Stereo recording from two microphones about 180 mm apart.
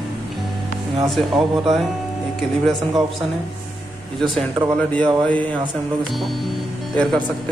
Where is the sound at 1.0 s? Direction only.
Centre (ahead or behind).